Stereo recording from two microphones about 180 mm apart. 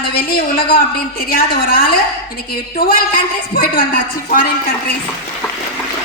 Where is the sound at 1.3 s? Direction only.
55° left (ahead or behind).